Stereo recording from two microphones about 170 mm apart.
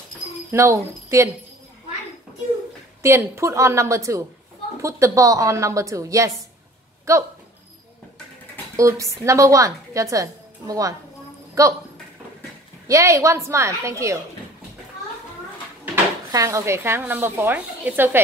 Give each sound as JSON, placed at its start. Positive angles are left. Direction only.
{"t": 0.5, "sound": "a woman's voice", "side_deg": -15}
{"t": 3.0, "sound": "a woman's voice", "side_deg": -15}
{"t": 8.7, "sound": "a woman's voice", "side_deg": -20}
{"t": 12.8, "sound": "a woman's voice", "side_deg": -20}
{"t": 15.8, "sound": "speech", "side_deg": -15}